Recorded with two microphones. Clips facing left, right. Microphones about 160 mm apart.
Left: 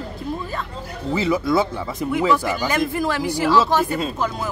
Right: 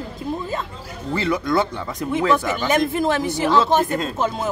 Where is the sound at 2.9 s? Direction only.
20° right (ahead or behind).